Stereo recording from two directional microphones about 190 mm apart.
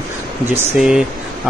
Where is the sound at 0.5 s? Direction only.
5° right (ahead or behind).